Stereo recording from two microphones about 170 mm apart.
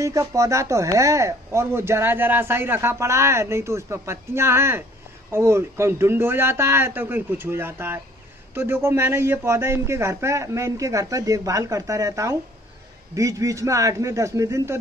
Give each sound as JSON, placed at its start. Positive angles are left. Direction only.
{"t": 0.0, "sound": "speech", "side_deg": -20}